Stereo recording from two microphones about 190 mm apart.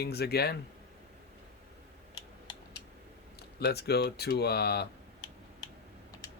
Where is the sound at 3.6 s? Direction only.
55° left (ahead or behind).